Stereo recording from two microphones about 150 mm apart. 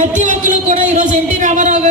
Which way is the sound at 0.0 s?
55° right (ahead or behind).